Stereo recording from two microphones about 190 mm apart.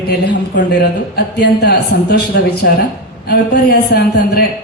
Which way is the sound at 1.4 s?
60° left (ahead or behind).